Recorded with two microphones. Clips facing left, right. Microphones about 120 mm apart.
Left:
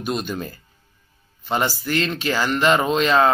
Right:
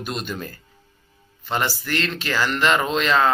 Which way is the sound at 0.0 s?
15° left (ahead or behind).